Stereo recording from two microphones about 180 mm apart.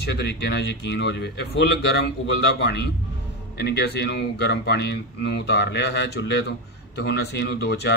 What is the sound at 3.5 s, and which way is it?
Speech, 65° left (ahead or behind).